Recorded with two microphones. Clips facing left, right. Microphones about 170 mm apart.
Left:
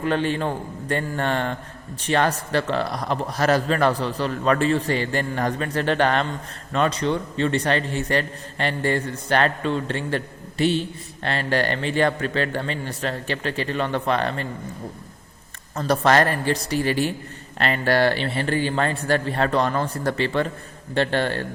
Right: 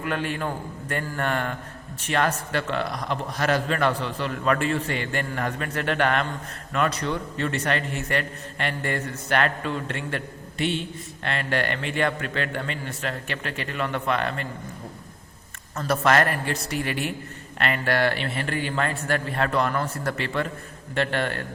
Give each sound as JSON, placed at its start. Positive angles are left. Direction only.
{"t": 0.0, "sound": "a man's voice", "side_deg": 30}
{"t": 15.7, "sound": "a man's voice", "side_deg": 30}